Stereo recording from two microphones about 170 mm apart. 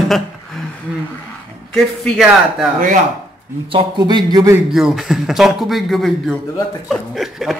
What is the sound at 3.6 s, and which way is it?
Speech, 30° right (ahead or behind).